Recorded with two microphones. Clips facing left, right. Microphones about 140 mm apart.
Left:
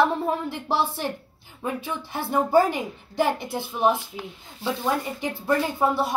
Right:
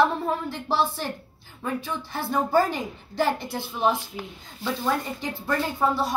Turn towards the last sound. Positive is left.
turn(degrees=20)  # may be behind; listen again after turning